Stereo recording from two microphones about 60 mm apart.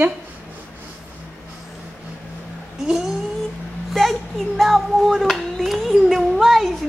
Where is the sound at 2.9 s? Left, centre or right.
Centre.